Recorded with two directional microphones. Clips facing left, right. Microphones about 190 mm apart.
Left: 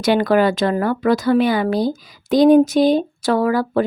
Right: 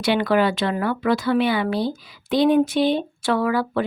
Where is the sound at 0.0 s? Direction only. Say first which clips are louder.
Left 4 dB; 45° left (ahead or behind).